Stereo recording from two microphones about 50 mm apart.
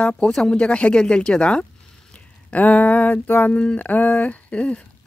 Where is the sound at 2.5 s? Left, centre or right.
Left.